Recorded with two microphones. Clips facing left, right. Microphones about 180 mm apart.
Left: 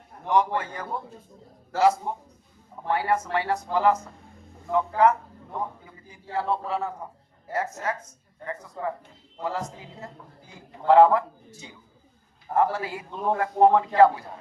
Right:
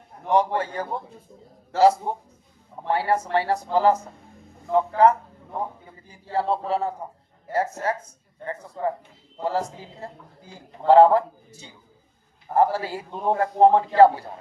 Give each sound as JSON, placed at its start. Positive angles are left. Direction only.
{"t": 0.3, "sound": "a man's voice", "side_deg": -30}
{"t": 12.5, "sound": "a man's voice", "side_deg": -30}